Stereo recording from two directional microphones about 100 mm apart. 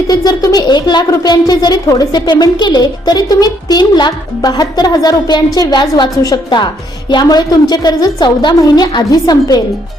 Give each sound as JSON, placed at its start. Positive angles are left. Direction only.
{"t": 0.1, "sound": "speech", "side_deg": 40}